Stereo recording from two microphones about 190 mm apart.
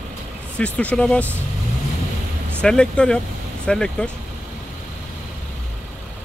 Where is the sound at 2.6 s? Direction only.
5° left (ahead or behind).